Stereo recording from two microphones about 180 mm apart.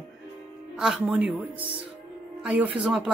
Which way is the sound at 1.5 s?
30° right (ahead or behind).